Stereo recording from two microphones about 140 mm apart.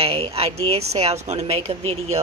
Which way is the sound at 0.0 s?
45° right (ahead or behind).